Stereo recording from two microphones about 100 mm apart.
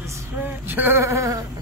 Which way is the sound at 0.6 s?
20° right (ahead or behind).